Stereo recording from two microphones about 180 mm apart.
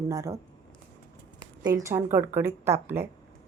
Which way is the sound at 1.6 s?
20° right (ahead or behind).